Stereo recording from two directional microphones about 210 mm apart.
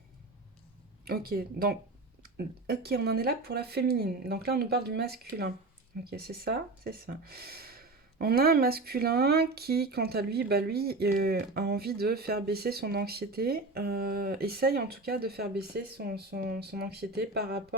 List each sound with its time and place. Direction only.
1.0 s speech: 45° right (ahead or behind)